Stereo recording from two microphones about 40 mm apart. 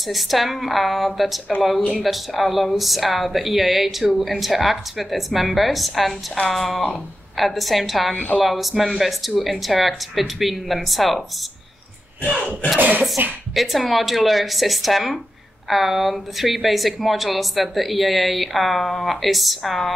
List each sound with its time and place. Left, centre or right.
0.0 s a woman's voice: centre
12.7 s speech: right
13.6 s a woman's voice: centre